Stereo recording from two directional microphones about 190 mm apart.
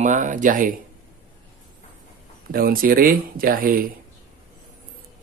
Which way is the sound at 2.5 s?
50° right (ahead or behind).